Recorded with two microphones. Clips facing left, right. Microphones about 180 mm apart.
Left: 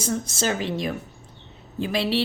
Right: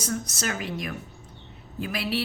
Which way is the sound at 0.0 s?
25° left (ahead or behind).